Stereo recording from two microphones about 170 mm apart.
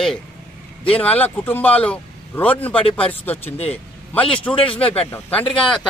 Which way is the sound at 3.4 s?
40° left (ahead or behind).